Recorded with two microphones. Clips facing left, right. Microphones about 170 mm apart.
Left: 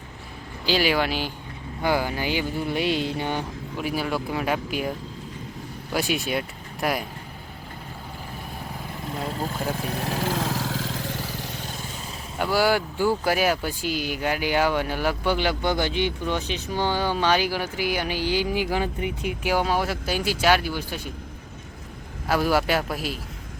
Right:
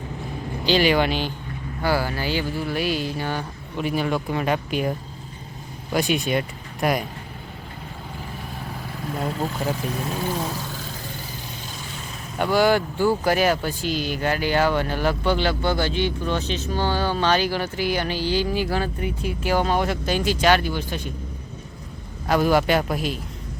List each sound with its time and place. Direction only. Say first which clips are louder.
0.6 s speech: right 3 dB; 5° left (ahead or behind)
1.8 s speech: right 1 dB; 15° left (ahead or behind)
3.8 s speech: right 3 dB; 5° left (ahead or behind)
9.9 s vehicle: even; 70° left (ahead or behind)
12.4 s speech: right 3 dB; 5° left (ahead or behind)
22.3 s speech: right 3 dB; 5° left (ahead or behind)